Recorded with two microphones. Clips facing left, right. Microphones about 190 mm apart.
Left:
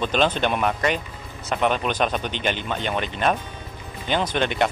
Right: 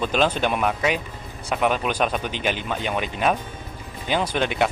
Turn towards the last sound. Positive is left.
turn(degrees=-5)  # may be behind; listen again after turning